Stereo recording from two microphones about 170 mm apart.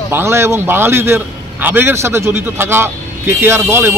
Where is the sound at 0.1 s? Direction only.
15° right (ahead or behind).